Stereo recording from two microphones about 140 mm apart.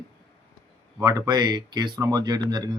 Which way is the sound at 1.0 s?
25° right (ahead or behind).